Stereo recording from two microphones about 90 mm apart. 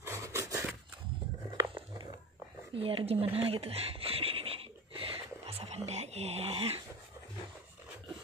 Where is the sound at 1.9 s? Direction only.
60° right (ahead or behind).